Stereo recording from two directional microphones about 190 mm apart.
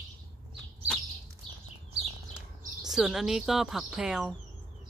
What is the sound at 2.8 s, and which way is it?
A woman's voice, centre (ahead or behind).